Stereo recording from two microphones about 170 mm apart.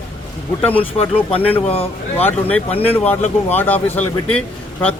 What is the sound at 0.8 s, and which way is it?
Speech, 35° left (ahead or behind).